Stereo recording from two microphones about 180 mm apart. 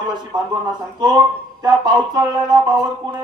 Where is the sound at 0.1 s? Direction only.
25° right (ahead or behind).